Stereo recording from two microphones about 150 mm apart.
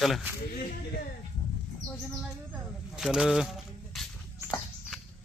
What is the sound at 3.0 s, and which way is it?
Speech, 5° right (ahead or behind).